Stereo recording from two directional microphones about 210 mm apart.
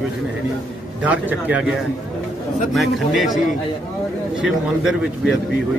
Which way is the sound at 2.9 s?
Centre (ahead or behind).